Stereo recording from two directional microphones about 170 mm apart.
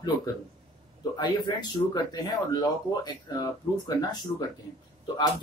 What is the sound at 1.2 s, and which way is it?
Speech, 25° left (ahead or behind).